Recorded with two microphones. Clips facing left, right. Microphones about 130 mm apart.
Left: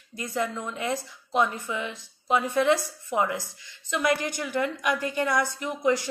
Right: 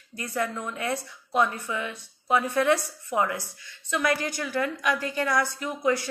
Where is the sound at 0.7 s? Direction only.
15° left (ahead or behind).